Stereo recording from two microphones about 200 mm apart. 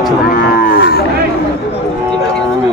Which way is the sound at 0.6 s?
45° left (ahead or behind).